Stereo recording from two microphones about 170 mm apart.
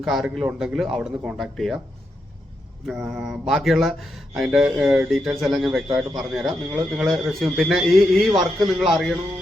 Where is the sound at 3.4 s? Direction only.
Centre (ahead or behind).